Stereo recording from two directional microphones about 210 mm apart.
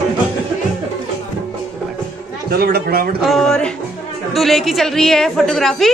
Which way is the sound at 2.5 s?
45° right (ahead or behind).